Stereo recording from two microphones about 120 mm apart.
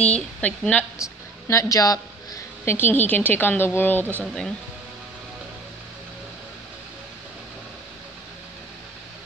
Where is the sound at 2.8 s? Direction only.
15° left (ahead or behind).